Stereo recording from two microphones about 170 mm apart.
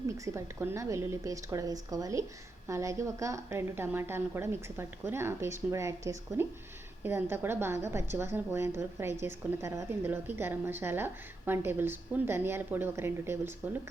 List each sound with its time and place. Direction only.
0.3 s a woman's voice: 15° right (ahead or behind)